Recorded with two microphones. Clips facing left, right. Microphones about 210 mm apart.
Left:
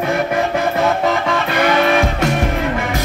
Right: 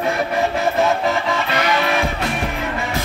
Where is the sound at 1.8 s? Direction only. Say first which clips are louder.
Left 5 dB; 45° left (ahead or behind).